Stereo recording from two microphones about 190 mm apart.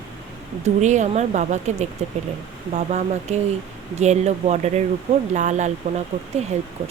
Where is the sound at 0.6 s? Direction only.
40° right (ahead or behind).